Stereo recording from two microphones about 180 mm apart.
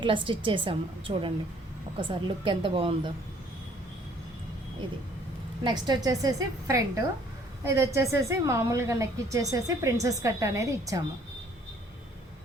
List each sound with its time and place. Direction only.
0.0 s a woman's voice: 25° right (ahead or behind)
5.6 s a woman's voice: 25° right (ahead or behind)